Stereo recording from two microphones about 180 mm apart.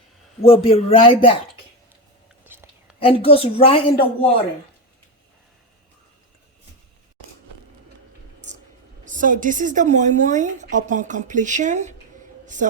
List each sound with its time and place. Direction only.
0.4 s speech: 35° left (ahead or behind)
2.4 s whispering: 10° right (ahead or behind)
3.0 s speech: 30° left (ahead or behind)
9.0 s a woman's voice: 45° right (ahead or behind)